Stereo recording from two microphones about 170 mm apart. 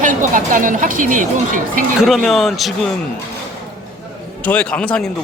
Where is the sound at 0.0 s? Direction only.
50° right (ahead or behind).